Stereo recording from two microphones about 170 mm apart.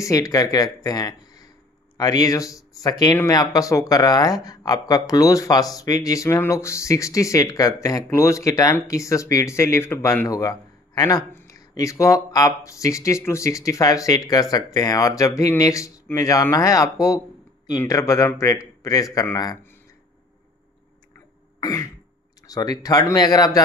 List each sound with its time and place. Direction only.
0.0 s speech: 20° left (ahead or behind)
21.5 s throat clearing: 20° left (ahead or behind)
22.5 s speech: 20° left (ahead or behind)